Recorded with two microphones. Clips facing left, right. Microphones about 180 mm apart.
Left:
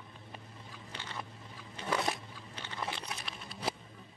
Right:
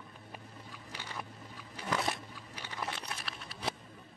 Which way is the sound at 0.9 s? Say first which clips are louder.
Even; 10° right (ahead or behind).